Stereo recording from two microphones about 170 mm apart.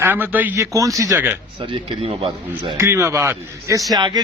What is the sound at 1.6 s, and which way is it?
Speech, 30° right (ahead or behind).